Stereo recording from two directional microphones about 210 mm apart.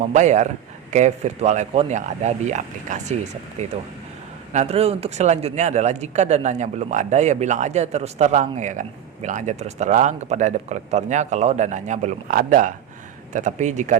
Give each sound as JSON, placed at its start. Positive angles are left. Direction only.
{"t": 0.0, "sound": "speech", "side_deg": -35}
{"t": 4.5, "sound": "speech", "side_deg": -30}